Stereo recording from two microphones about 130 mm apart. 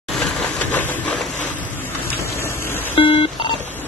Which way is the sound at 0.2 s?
10° left (ahead or behind).